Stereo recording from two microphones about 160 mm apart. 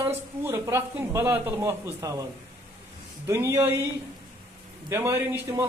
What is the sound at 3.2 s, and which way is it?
Speech, 15° right (ahead or behind).